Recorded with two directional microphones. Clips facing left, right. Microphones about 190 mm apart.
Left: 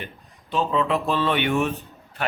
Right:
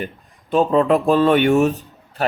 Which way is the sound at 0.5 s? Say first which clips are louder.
Right 7 dB; 45° right (ahead or behind).